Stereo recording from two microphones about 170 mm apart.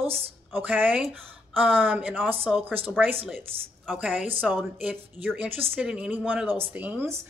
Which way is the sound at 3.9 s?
10° right (ahead or behind).